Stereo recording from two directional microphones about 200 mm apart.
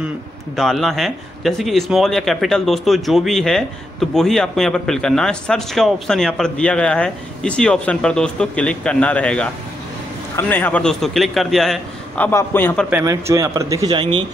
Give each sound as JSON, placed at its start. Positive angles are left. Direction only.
{"t": 0.6, "sound": "a man's voice", "side_deg": 0}
{"t": 12.9, "sound": "speech", "side_deg": -15}